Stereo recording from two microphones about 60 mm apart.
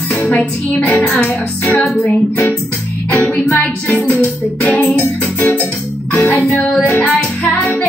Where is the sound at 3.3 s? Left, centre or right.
Left.